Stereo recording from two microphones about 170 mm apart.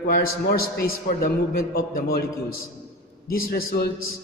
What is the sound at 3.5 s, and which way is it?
Speech, 65° left (ahead or behind).